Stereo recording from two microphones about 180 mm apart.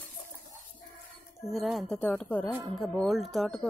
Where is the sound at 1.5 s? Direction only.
Centre (ahead or behind).